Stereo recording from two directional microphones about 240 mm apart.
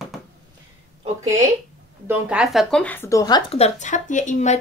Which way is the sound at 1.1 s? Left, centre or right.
Centre.